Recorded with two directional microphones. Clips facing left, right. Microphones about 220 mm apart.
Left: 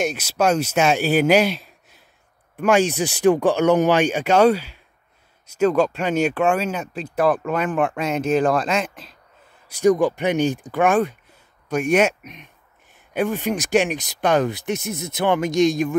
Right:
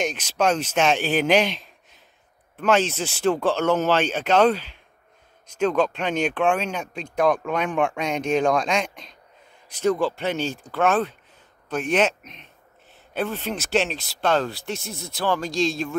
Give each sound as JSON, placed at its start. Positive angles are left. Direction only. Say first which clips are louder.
{"t": 0.0, "sound": "speech", "louder": "left 2 dB", "side_deg": 10}